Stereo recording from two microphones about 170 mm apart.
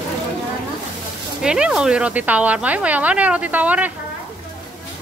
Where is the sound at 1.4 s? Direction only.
5° right (ahead or behind).